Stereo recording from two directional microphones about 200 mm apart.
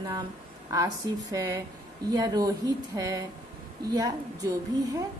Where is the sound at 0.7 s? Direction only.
20° right (ahead or behind).